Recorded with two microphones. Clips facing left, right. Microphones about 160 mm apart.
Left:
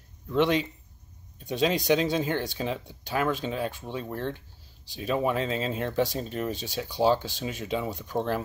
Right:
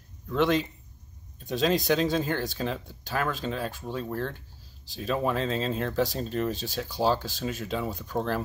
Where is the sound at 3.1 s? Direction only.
15° left (ahead or behind).